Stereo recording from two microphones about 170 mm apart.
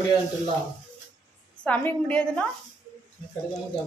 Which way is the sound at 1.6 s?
5° left (ahead or behind).